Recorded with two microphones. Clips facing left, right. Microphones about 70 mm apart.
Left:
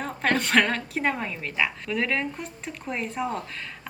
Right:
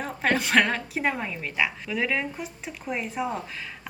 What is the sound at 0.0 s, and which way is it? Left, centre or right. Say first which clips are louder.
A woman's voice: even; centre.